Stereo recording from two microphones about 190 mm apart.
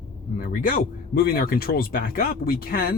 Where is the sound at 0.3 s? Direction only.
45° left (ahead or behind).